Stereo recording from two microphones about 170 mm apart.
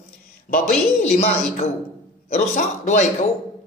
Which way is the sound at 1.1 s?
35° left (ahead or behind).